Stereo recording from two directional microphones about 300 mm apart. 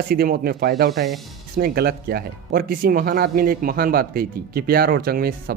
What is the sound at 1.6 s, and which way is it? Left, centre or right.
Speech, right.